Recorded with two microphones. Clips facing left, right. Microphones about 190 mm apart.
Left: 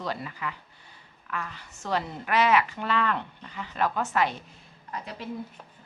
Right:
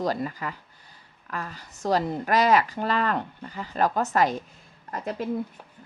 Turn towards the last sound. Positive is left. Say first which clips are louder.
# right 7 dB
turn(degrees=-45)  # may be behind; listen again after turning